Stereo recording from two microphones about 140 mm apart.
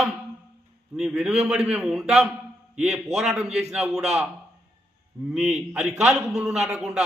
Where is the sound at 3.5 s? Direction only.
50° right (ahead or behind).